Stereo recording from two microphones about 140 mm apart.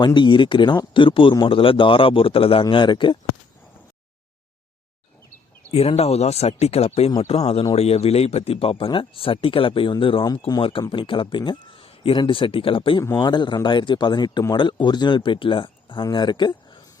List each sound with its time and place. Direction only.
0.0 s speech: 35° left (ahead or behind)
5.7 s speech: 50° left (ahead or behind)
13.0 s speech: 30° left (ahead or behind)